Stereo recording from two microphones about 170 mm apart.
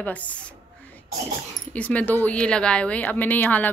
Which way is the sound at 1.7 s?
10° left (ahead or behind).